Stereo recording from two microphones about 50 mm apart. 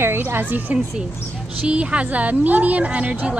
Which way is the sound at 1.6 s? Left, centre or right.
Right.